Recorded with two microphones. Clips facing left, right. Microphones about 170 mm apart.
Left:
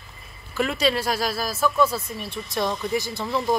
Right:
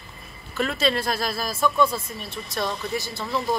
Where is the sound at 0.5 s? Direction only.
10° left (ahead or behind).